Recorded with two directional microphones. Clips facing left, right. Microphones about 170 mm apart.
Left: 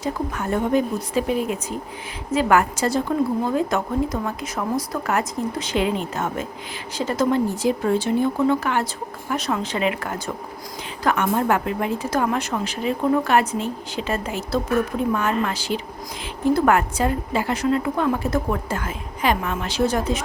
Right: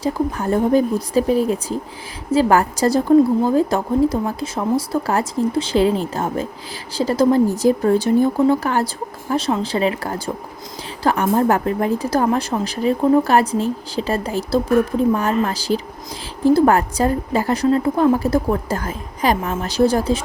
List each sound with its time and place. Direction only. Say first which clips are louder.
0.0 s a woman's voice: right 5 dB; 35° right (ahead or behind)